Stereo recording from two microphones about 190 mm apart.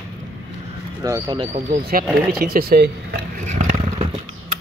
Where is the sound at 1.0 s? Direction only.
20° right (ahead or behind).